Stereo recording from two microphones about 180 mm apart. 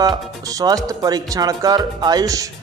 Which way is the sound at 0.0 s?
20° right (ahead or behind).